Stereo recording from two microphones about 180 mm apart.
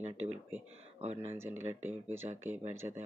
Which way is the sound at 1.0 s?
35° right (ahead or behind).